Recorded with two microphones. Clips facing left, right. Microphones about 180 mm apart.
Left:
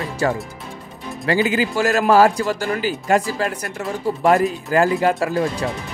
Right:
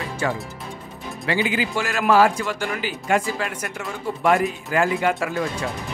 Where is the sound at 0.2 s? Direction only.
40° left (ahead or behind).